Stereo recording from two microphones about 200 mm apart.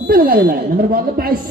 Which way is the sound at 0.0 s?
45° right (ahead or behind).